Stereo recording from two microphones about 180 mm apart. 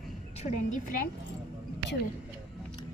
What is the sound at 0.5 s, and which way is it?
Speech, 45° left (ahead or behind).